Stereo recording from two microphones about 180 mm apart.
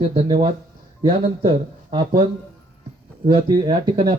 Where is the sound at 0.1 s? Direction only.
30° right (ahead or behind).